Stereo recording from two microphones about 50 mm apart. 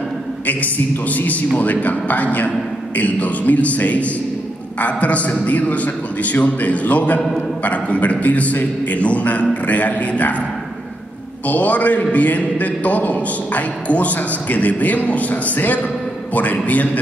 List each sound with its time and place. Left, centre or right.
0.5 s a man's voice: left
7.2 s a man's voice: centre
7.6 s a man's voice: left
11.4 s a man's voice: left